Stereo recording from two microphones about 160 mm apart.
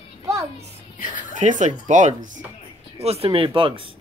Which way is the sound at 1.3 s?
50° right (ahead or behind).